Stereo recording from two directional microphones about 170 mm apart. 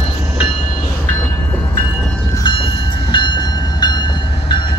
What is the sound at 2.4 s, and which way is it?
Train, 30° left (ahead or behind).